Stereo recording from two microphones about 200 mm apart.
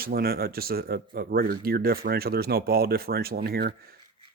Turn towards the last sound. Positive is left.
turn(degrees=-50)  # may be behind; listen again after turning